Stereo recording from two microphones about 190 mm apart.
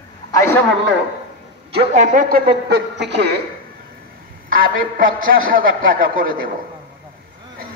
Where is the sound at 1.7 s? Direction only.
40° right (ahead or behind).